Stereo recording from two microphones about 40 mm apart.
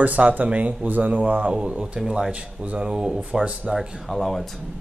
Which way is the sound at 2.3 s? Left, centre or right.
Right.